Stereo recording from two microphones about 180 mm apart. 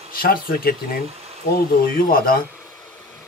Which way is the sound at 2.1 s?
55° left (ahead or behind).